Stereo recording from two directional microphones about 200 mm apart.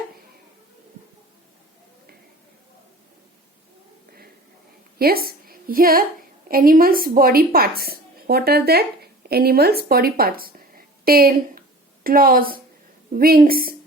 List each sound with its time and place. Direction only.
4.9 s a woman's voice: 50° right (ahead or behind)